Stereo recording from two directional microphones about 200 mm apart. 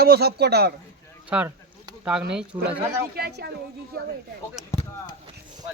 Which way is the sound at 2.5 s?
20° right (ahead or behind).